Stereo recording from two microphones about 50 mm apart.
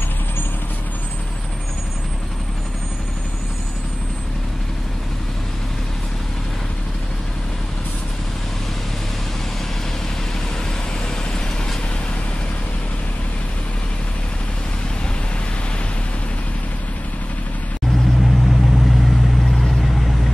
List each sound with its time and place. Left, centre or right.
17.9 s vehicle: centre